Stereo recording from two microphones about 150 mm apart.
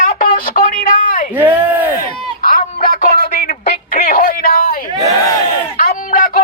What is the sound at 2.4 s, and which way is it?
Music, 65° left (ahead or behind).